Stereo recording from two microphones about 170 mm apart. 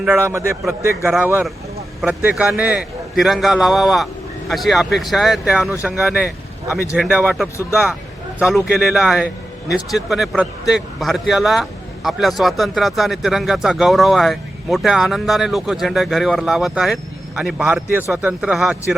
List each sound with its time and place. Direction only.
0.0 s a man's voice: 10° right (ahead or behind)